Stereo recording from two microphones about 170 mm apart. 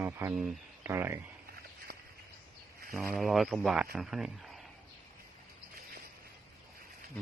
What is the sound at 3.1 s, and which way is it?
Speech, centre (ahead or behind).